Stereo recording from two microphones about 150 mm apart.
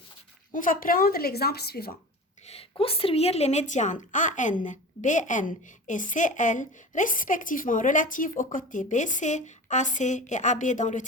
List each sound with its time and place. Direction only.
0.5 s speech: 65° left (ahead or behind); by 2.0 s 90° left
2.5 s a woman's voice: 40° left (ahead or behind); by 11.0 s 55° left (ahead or behind)